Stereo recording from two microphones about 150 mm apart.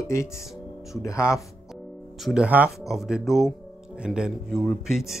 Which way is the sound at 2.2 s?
5° right (ahead or behind).